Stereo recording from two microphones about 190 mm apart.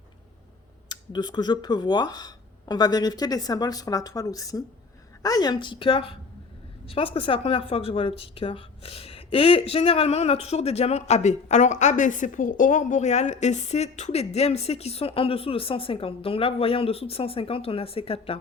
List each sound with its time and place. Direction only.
0.9 s speech: 25° left (ahead or behind)